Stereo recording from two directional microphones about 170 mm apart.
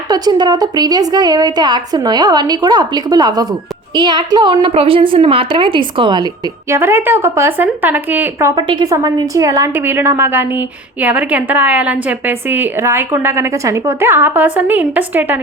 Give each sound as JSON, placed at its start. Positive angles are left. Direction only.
{"t": 0.1, "sound": "a woman's voice", "side_deg": -25}
{"t": 6.7, "sound": "a woman's voice", "side_deg": -15}
{"t": 8.5, "sound": "a woman's voice", "side_deg": -30}